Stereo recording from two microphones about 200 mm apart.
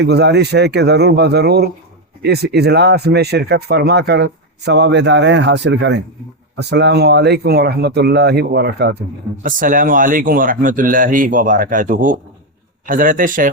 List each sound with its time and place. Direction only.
0.0 s speech: 55° right (ahead or behind)